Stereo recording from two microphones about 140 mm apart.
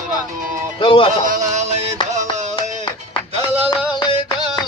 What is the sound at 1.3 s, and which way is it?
Music, 55° right (ahead or behind).